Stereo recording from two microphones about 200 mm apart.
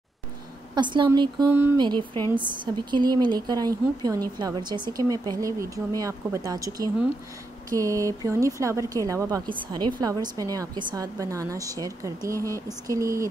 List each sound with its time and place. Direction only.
0.7 s speech: 25° right (ahead or behind)
1.5 s a woman's voice: 10° right (ahead or behind)
1.8 s a woman's voice: 20° right (ahead or behind)